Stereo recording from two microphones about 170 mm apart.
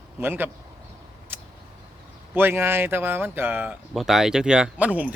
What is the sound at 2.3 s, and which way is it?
Speech, 15° right (ahead or behind).